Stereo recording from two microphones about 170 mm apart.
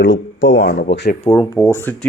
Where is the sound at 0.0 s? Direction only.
90° left.